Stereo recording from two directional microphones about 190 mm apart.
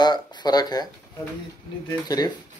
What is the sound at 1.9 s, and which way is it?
Speech, 20° left (ahead or behind).